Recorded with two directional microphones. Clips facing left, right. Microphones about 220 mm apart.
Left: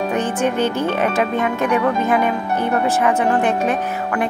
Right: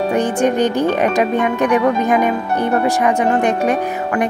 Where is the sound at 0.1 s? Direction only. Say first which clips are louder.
Right 5 dB; 15° right (ahead or behind).